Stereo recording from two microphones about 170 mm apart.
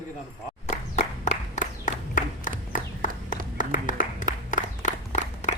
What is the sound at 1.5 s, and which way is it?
Applause, 50° left (ahead or behind).